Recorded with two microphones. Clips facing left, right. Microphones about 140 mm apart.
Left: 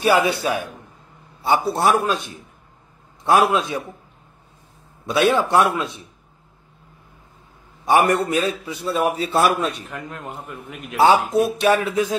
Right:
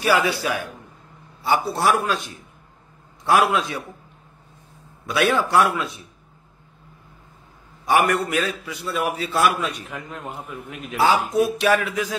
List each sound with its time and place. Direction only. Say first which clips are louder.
0.0 s a man's voice: left 3 dB; 20° left (ahead or behind)
1.7 s a man's voice: left 2 dB; 25° left (ahead or behind)
5.0 s a man's voice: left 3 dB; 25° left (ahead or behind)
7.8 s a man's voice: left 2 dB; 25° left (ahead or behind)
9.8 s a man's voice: left 1 dB; centre (ahead or behind)
11.6 s a man's voice: left 2 dB; 30° left (ahead or behind)